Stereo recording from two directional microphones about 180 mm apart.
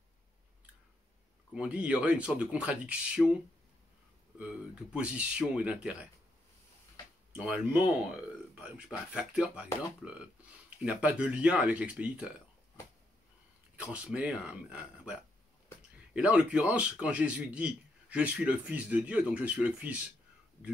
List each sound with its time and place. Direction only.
1.5 s speech: 5° right (ahead or behind)
4.9 s speech: 5° right (ahead or behind)
7.3 s speech: 5° right (ahead or behind)
13.7 s speech: 5° right (ahead or behind)